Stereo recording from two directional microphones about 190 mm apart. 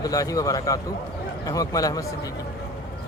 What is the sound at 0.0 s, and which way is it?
Speech, 20° left (ahead or behind).